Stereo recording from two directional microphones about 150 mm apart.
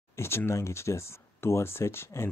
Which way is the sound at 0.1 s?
15° left (ahead or behind).